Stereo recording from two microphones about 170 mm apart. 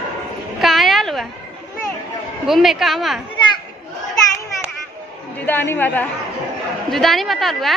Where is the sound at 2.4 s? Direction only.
Centre (ahead or behind).